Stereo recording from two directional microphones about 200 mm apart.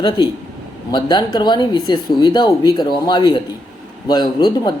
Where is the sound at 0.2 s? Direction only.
25° left (ahead or behind).